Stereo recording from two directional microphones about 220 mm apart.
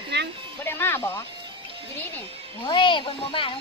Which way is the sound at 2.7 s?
20° left (ahead or behind).